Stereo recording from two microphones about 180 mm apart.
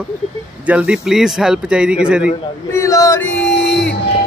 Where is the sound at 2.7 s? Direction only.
15° left (ahead or behind).